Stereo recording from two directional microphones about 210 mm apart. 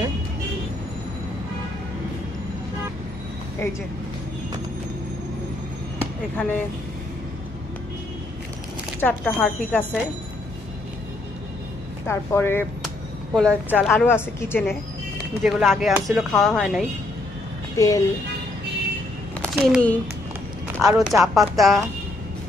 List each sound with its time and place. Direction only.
5.9 s basketball bounce: 10° left (ahead or behind)
9.0 s speech: 5° left (ahead or behind)
12.1 s speech: 10° left (ahead or behind)
12.8 s a woman's voice: centre (ahead or behind)
15.4 s speech: centre (ahead or behind)
17.7 s speech: 15° left (ahead or behind)
19.6 s speech: 5° left (ahead or behind)